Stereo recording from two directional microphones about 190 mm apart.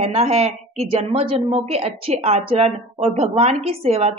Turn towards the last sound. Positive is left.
turn(degrees=-35)  # may be behind; listen again after turning